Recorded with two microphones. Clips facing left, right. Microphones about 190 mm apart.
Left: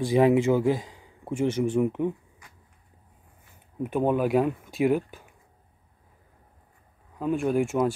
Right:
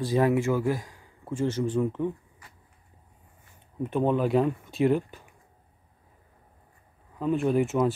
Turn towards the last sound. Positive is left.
turn(degrees=10)  # may be behind; listen again after turning